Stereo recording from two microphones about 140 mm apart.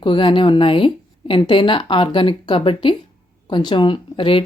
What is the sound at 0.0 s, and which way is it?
Speech, 35° left (ahead or behind).